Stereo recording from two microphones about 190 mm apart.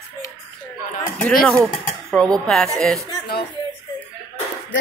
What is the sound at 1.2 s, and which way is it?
Speech, 5° left (ahead or behind).